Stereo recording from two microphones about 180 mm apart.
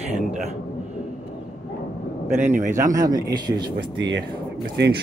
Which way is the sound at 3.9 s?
90° right.